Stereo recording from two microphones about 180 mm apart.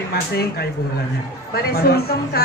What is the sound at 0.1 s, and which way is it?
A woman's voice, 60° left (ahead or behind).